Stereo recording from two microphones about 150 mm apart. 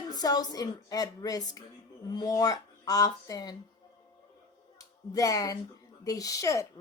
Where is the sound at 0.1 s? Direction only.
25° left (ahead or behind).